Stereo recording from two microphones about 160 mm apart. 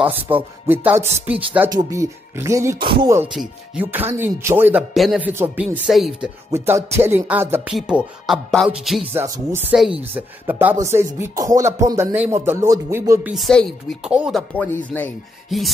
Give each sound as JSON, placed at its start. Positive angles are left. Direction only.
{"t": 0.0, "sound": "speech", "side_deg": -10}
{"t": 1.7, "sound": "speech", "side_deg": -20}
{"t": 3.3, "sound": "speech", "side_deg": -10}
{"t": 4.9, "sound": "speech", "side_deg": 0}
{"t": 5.3, "sound": "speech", "side_deg": -15}
{"t": 5.9, "sound": "speech", "side_deg": 0}
{"t": 6.5, "sound": "speech", "side_deg": -15}
{"t": 9.1, "sound": "speech", "side_deg": -15}
{"t": 13.3, "sound": "speech", "side_deg": 0}
{"t": 14.5, "sound": "speech", "side_deg": 10}